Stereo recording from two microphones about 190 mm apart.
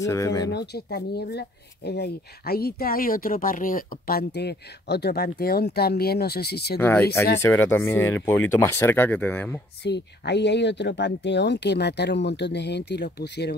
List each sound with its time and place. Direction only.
0.0 s speech: 15° left (ahead or behind)
0.5 s speech: 60° left (ahead or behind)
6.8 s speech: 10° left (ahead or behind)
9.8 s speech: 65° left (ahead or behind)